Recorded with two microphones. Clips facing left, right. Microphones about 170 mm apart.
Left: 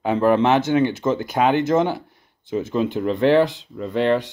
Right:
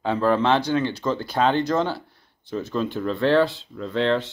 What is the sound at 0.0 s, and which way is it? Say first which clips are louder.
Speech: left 4 dB; 15° left (ahead or behind).